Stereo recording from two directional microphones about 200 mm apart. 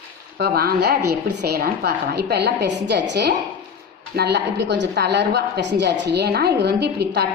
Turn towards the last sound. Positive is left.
turn(degrees=-55)  # may be behind; listen again after turning